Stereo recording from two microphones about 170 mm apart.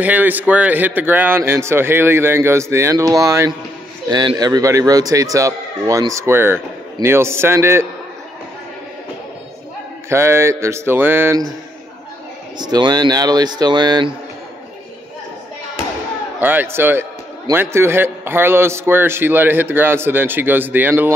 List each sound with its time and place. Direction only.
0.0 s a man's voice: 10° right (ahead or behind)
10.0 s a man's voice: 15° right (ahead or behind)
12.5 s speech: 25° right (ahead or behind)
16.3 s a man's voice: 10° right (ahead or behind)